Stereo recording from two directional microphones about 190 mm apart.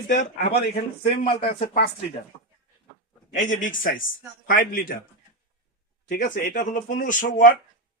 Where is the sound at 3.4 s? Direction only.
40° left (ahead or behind).